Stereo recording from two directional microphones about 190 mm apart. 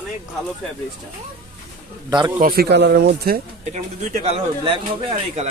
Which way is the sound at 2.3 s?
50° right (ahead or behind).